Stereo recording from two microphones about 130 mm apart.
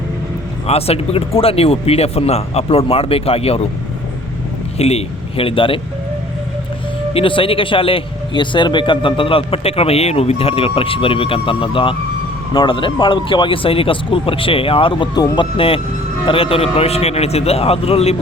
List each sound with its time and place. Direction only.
0.7 s a man's voice: 50° left (ahead or behind)
4.8 s a man's voice: 50° left (ahead or behind)
7.1 s a man's voice: 45° left (ahead or behind)
15.5 s a man's voice: 45° left (ahead or behind)